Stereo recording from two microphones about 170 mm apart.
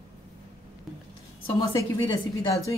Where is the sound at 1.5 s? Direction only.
25° left (ahead or behind).